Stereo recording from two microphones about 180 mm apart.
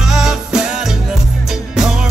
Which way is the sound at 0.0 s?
Centre (ahead or behind).